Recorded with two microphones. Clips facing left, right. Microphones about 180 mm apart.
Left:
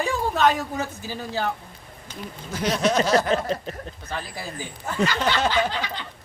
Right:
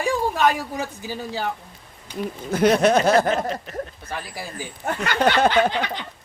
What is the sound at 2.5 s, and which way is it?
Snicker, 55° right (ahead or behind).